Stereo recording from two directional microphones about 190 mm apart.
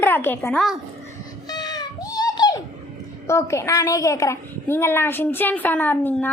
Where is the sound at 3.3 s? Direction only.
15° left (ahead or behind).